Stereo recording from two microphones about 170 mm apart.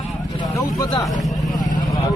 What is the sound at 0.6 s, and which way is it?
Speech, 20° left (ahead or behind).